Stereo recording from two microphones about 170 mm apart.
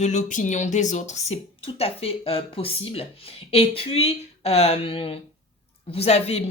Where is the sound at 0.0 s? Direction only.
45° left (ahead or behind).